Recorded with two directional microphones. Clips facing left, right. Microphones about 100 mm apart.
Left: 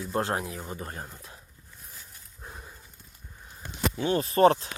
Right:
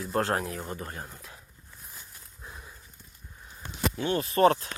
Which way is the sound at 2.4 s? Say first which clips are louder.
Left 2 dB; 40° left (ahead or behind).